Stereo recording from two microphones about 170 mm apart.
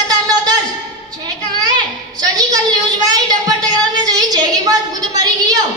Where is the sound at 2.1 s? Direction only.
25° right (ahead or behind).